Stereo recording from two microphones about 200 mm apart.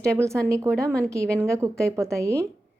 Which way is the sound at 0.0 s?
15° right (ahead or behind).